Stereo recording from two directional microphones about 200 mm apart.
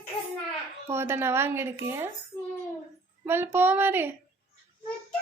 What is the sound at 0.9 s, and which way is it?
Speech, 10° right (ahead or behind).